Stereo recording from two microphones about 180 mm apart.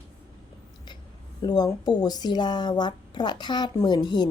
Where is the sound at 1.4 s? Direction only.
20° left (ahead or behind).